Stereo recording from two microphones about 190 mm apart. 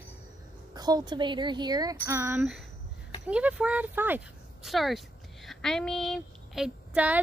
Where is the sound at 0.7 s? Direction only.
20° right (ahead or behind).